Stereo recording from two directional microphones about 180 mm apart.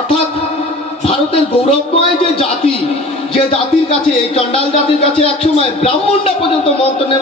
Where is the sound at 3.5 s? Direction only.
30° left (ahead or behind).